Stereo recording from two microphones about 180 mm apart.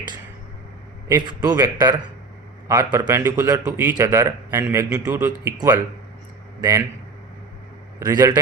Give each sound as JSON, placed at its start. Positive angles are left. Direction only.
{"t": 1.0, "sound": "a man's voice", "side_deg": -20}
{"t": 7.9, "sound": "a man's voice", "side_deg": -20}